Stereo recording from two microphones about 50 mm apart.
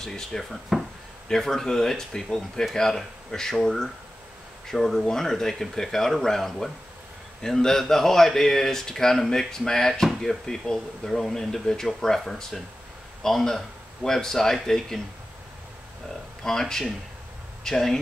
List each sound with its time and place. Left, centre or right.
0.0 s speech: centre
16.4 s speech: centre